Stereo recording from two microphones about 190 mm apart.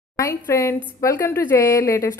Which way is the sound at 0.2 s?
15° left (ahead or behind).